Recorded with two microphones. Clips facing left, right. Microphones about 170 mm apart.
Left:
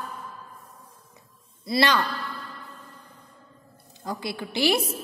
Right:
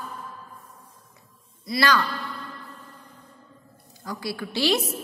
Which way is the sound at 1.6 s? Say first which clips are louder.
Even; 25° left (ahead or behind).